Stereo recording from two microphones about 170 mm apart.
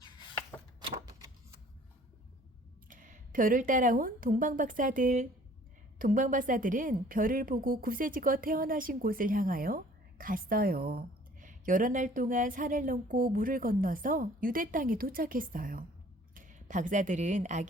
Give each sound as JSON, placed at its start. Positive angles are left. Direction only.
{"t": 0.0, "sound": "a sound", "side_deg": 25}
{"t": 0.8, "sound": "typewriter", "side_deg": -20}
{"t": 2.9, "sound": "a woman's voice", "side_deg": -50}